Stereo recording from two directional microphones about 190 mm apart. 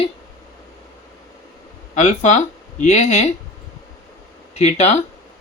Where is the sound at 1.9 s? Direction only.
40° left (ahead or behind).